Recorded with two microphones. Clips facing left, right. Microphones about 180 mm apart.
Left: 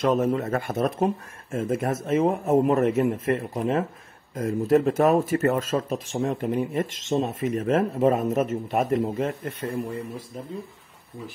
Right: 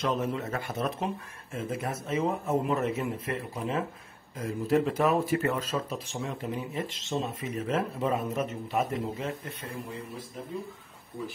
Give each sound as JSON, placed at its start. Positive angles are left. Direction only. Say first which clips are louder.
{"t": 0.0, "sound": "speech", "louder": "left 7 dB", "side_deg": 50}